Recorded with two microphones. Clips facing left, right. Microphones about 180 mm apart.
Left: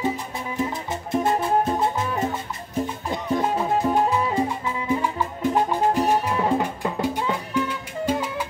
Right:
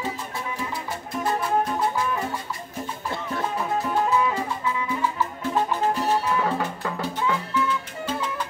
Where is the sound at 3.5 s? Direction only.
30° left (ahead or behind).